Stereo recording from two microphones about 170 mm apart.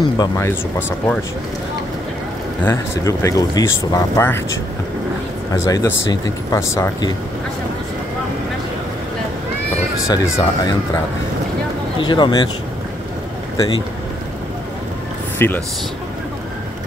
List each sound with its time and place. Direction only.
0.2 s speech: 15° left (ahead or behind)
2.6 s speech: 15° left (ahead or behind)
5.7 s speech: 20° left (ahead or behind)
10.0 s speech: 20° left (ahead or behind)
12.0 s speech: 25° left (ahead or behind)
15.3 s speech: 10° left (ahead or behind)